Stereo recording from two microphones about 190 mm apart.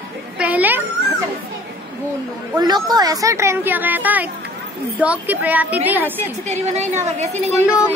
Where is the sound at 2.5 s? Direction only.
20° right (ahead or behind).